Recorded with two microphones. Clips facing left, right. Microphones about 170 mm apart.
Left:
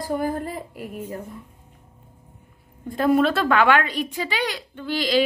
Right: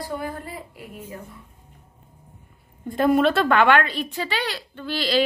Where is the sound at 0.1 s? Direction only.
45° left (ahead or behind).